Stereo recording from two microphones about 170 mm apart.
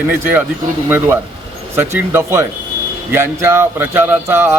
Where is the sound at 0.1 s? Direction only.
10° right (ahead or behind).